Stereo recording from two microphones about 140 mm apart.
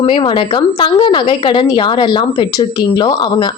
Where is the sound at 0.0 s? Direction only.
40° left (ahead or behind).